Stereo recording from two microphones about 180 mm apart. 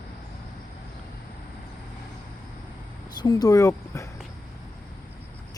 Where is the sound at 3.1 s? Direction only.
20° left (ahead or behind).